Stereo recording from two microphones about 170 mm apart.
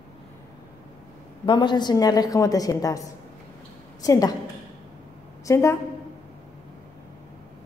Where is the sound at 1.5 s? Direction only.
25° left (ahead or behind).